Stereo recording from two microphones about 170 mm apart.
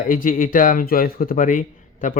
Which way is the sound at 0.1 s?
55° left (ahead or behind).